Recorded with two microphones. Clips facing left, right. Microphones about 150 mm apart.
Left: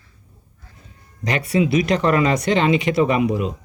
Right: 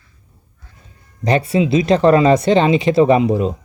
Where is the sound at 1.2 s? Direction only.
30° right (ahead or behind).